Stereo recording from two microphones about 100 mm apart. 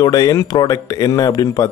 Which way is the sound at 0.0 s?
35° left (ahead or behind).